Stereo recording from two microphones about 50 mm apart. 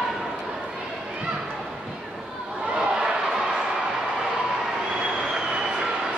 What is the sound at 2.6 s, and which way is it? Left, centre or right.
Crowd, centre.